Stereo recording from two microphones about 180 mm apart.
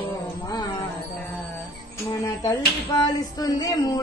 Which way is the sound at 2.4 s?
20° left (ahead or behind).